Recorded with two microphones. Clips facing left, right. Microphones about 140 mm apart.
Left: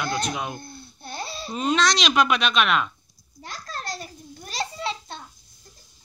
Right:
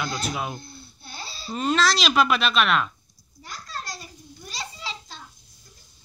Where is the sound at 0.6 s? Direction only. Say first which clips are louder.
Left 4 dB; 50° left (ahead or behind).